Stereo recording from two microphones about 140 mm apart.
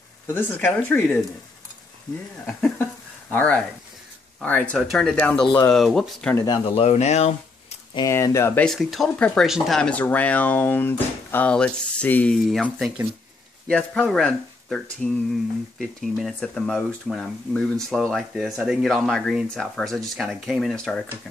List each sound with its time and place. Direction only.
0.3 s speech: 15° left (ahead or behind)
2.4 s speech: 10° left (ahead or behind)
6.4 s speech: 30° left (ahead or behind)
6.7 s speech: 50° left (ahead or behind)
7.9 s speech: 25° left (ahead or behind)
8.5 s speech: centre (ahead or behind)
12.7 s speech: centre (ahead or behind)